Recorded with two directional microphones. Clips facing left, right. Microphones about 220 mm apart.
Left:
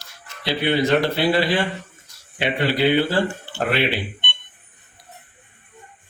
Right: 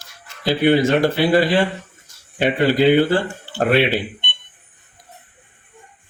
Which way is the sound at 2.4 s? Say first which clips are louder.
Right 5 dB; 45° right (ahead or behind).